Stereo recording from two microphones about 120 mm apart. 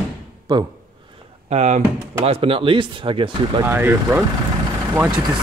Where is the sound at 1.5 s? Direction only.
75° right (ahead or behind); by 3.6 s 45° right (ahead or behind).